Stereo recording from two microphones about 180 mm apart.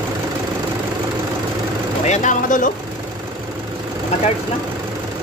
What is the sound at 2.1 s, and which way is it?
Speech, 45° left (ahead or behind).